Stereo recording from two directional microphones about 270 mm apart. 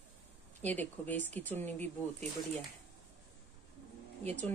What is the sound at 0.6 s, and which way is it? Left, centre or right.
Speech, centre.